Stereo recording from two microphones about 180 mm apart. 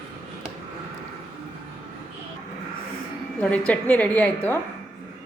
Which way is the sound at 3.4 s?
10° left (ahead or behind).